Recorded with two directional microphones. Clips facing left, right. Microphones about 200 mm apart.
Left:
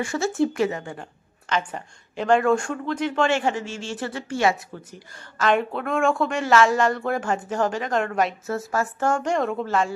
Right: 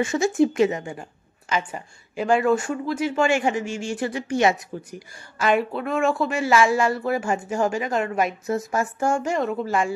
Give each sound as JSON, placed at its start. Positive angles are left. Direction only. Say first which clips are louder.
{"t": 0.0, "sound": "speech", "louder": "right 3 dB", "side_deg": -20}